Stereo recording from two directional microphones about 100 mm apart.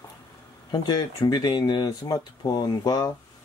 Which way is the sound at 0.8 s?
45° left (ahead or behind).